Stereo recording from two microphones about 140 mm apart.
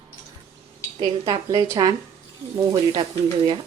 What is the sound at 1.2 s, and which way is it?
Speech, 25° right (ahead or behind).